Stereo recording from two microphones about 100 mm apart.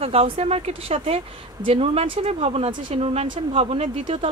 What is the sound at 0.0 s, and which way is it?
Speech, 90° right.